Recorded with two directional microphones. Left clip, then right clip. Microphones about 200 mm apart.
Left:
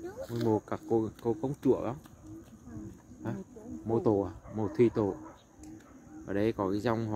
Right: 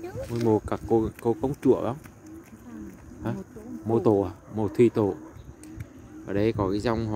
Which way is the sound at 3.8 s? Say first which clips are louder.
Right 6 dB; 15° right (ahead or behind).